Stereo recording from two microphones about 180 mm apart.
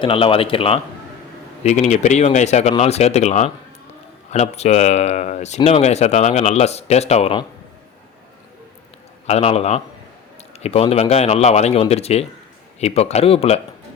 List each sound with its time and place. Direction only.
0.0 s speech: 30° left (ahead or behind)
9.2 s speech: 35° left (ahead or behind)